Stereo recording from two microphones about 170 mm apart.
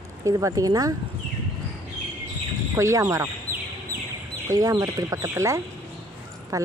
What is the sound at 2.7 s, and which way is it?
Speech, 20° right (ahead or behind).